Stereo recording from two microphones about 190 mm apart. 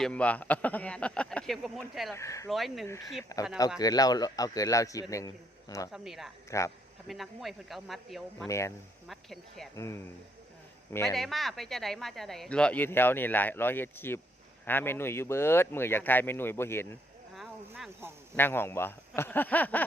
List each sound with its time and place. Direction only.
0.0 s speech: 5° left (ahead or behind)
2.1 s speech: 15° left (ahead or behind)
2.5 s speech: centre (ahead or behind)
3.3 s a man's voice: 20° left (ahead or behind)
5.9 s speech: centre (ahead or behind)
6.5 s speech: 15° left (ahead or behind)
7.1 s speech: centre (ahead or behind)
8.4 s speech: 15° left (ahead or behind)
9.0 s speech: centre (ahead or behind)
9.7 s speech: 15° left (ahead or behind)
11.0 s speech: centre (ahead or behind)
17.3 s a sound: centre (ahead or behind)
18.3 s speech: 10° left (ahead or behind)